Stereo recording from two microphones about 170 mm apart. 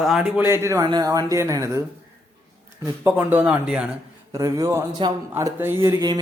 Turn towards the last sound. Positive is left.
turn(degrees=-20)  # may be behind; listen again after turning